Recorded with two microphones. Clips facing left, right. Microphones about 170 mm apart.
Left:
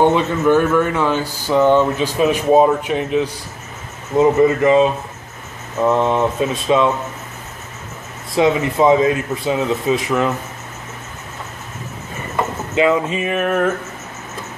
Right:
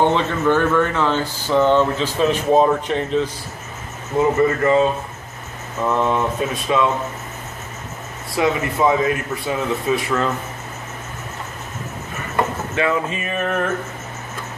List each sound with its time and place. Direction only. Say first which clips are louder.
0.0 s speech: left 3 dB; 10° left (ahead or behind)
5.9 s a man's voice: left 3 dB; 20° left (ahead or behind)
8.4 s a man's voice: left 4 dB; 20° left (ahead or behind)
12.7 s speech: left 6 dB; 20° left (ahead or behind)